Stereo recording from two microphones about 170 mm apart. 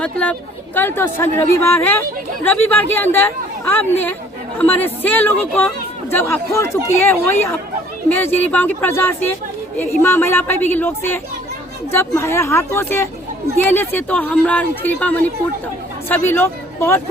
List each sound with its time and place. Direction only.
0.0 s a woman's voice: 5° left (ahead or behind)
8.4 s a woman's voice: 10° left (ahead or behind)